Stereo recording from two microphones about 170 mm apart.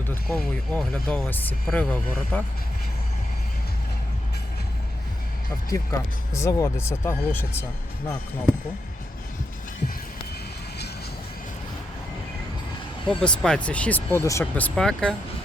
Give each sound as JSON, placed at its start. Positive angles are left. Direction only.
{"t": 0.1, "sound": "speech", "side_deg": 5}
{"t": 5.7, "sound": "speech", "side_deg": 20}
{"t": 13.1, "sound": "speech", "side_deg": 5}